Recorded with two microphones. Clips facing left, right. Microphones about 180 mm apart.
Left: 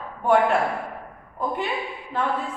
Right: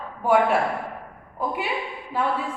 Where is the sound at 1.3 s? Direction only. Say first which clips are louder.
Even; 10° right (ahead or behind).